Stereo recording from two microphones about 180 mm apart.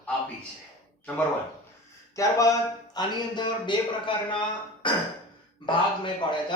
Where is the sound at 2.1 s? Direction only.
20° left (ahead or behind).